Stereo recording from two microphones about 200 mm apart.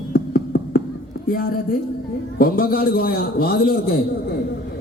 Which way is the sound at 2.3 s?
45° left (ahead or behind).